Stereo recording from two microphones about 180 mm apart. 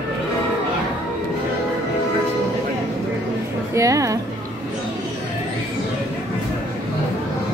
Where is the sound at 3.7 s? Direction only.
20° right (ahead or behind).